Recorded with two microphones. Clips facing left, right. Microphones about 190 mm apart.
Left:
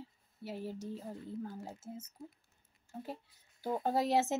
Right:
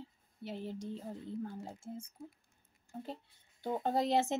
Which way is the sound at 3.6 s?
5° left (ahead or behind).